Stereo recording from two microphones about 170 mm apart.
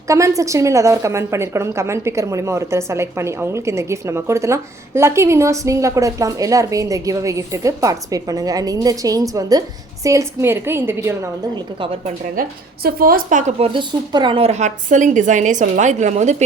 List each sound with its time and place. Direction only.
0.1 s a woman's voice: 20° right (ahead or behind)
11.5 s a woman's voice: 30° right (ahead or behind)
12.4 s a woman's voice: 60° right (ahead or behind)
13.6 s a woman's voice: 25° right (ahead or behind); by 16.4 s 45° right (ahead or behind)